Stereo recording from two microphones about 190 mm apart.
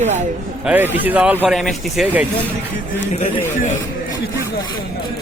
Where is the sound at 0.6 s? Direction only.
10° right (ahead or behind).